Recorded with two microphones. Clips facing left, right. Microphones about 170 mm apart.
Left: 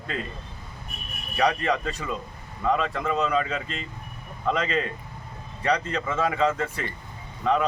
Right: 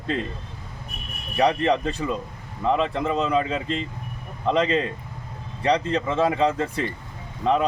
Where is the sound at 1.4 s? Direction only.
30° right (ahead or behind).